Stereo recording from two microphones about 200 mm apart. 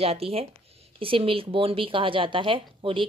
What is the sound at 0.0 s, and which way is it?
A woman's voice, 30° right (ahead or behind).